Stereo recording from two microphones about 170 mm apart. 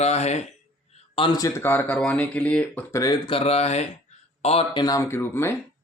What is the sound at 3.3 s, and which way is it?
A man's voice, 40° left (ahead or behind).